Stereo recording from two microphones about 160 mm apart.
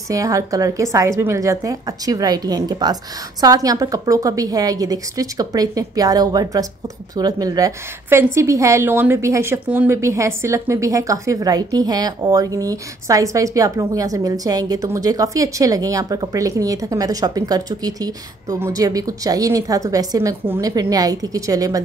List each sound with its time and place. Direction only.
0.1 s a woman's voice: 20° right (ahead or behind)